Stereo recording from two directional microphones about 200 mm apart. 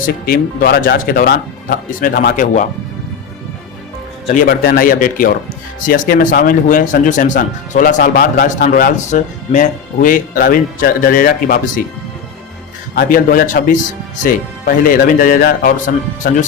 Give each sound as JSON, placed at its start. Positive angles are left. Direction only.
{"t": 0.3, "sound": "speech", "side_deg": 45}
{"t": 4.4, "sound": "speech", "side_deg": 45}
{"t": 13.0, "sound": "speech", "side_deg": 45}